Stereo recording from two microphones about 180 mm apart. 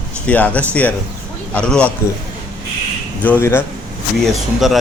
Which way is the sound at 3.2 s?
10° left (ahead or behind).